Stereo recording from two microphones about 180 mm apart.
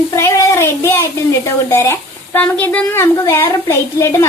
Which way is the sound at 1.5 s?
15° left (ahead or behind).